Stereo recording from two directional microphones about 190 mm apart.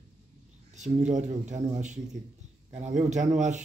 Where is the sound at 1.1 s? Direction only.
40° right (ahead or behind).